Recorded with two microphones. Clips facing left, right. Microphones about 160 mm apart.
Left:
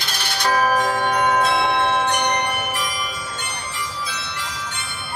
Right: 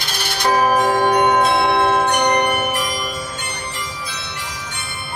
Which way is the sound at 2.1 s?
50° right (ahead or behind).